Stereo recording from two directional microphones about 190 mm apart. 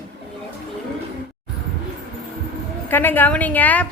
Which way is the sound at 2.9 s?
10° left (ahead or behind).